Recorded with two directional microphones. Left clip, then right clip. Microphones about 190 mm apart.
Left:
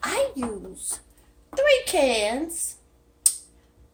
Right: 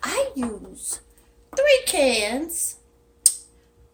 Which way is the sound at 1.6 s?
20° right (ahead or behind).